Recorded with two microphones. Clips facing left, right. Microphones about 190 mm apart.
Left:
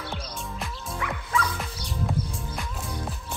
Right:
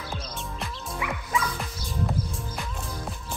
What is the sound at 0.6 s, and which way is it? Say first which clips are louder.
Music: even; 5° right (ahead or behind).